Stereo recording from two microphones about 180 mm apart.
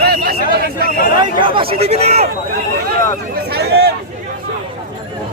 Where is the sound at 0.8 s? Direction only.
55° left (ahead or behind).